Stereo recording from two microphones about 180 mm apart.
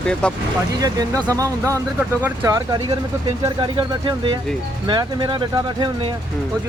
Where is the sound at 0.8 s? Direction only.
20° right (ahead or behind).